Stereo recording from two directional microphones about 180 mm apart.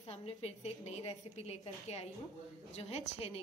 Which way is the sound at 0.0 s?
35° left (ahead or behind).